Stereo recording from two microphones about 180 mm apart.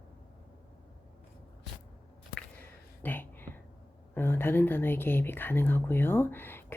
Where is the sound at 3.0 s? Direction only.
10° left (ahead or behind).